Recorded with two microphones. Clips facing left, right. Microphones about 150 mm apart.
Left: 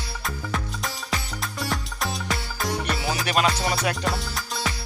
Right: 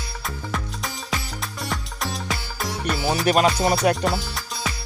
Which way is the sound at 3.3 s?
45° right (ahead or behind).